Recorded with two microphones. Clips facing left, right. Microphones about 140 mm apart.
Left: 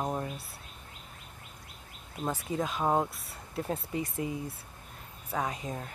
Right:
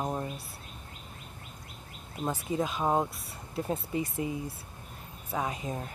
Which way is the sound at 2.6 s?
Centre (ahead or behind).